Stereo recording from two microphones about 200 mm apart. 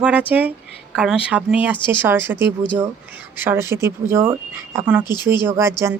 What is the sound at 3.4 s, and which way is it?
Speech, 10° right (ahead or behind).